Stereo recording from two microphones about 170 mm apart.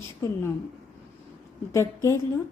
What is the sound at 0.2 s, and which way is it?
Speech, 15° left (ahead or behind).